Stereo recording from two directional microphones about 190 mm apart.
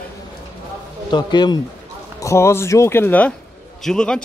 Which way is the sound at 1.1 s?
25° left (ahead or behind).